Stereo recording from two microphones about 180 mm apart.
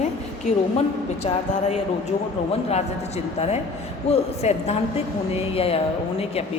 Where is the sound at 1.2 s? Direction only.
35° left (ahead or behind).